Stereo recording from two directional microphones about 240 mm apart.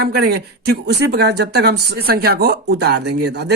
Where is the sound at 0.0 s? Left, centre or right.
Right.